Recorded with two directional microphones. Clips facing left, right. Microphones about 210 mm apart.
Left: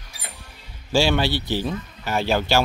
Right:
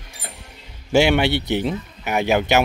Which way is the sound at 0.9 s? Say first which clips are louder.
Right 4 dB; 20° right (ahead or behind).